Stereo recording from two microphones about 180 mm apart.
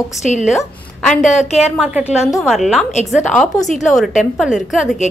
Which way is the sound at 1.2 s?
40° left (ahead or behind).